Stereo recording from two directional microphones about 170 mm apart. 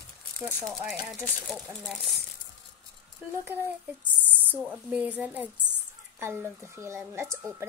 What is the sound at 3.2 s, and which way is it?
Speech, 10° right (ahead or behind).